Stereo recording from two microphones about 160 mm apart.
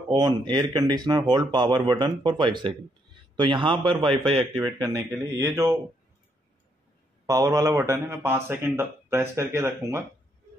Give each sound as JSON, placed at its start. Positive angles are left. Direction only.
{"t": 0.5, "sound": "a man's voice", "side_deg": -25}
{"t": 4.6, "sound": "speech", "side_deg": -20}
{"t": 7.2, "sound": "speech", "side_deg": -20}